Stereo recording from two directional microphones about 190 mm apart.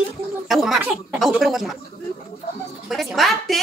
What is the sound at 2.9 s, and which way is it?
Music, centre (ahead or behind).